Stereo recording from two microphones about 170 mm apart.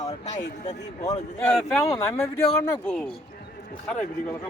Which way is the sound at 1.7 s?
15° left (ahead or behind).